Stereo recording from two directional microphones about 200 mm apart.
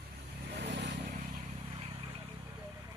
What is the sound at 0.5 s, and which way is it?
Vehicle, 60° right (ahead or behind).